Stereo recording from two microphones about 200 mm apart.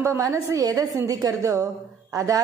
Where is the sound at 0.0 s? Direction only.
15° right (ahead or behind).